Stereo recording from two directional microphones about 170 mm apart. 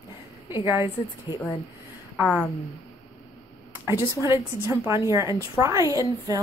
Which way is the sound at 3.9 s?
15° right (ahead or behind).